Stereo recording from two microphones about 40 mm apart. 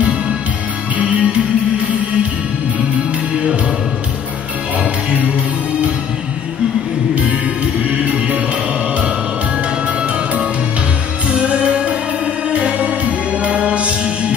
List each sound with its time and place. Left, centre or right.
1.0 s music: right
8.0 s music: right
11.2 s music: right